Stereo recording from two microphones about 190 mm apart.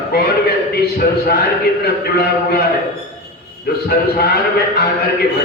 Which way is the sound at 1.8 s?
55° left (ahead or behind).